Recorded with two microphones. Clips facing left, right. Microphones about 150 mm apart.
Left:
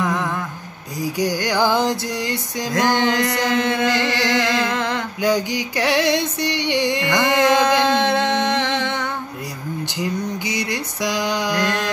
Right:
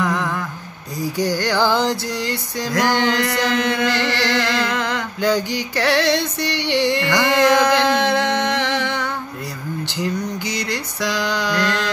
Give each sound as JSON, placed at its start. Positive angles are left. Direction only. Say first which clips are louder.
{"t": 0.0, "sound": "a sound", "louder": "right 1 dB", "side_deg": 20}
{"t": 1.1, "sound": "music", "louder": "right 1 dB", "side_deg": 15}
{"t": 10.4, "sound": "mantra", "louder": "even", "side_deg": 20}